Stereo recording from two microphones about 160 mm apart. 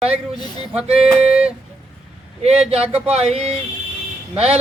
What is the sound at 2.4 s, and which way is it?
Speech, 40° right (ahead or behind).